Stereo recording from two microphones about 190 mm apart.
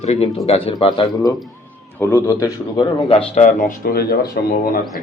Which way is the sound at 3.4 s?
40° left (ahead or behind).